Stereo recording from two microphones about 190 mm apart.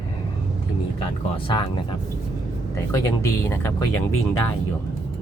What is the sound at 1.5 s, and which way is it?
Speech, 25° left (ahead or behind).